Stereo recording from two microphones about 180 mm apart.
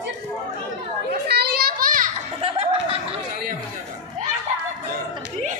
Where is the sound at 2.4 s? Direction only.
30° right (ahead or behind).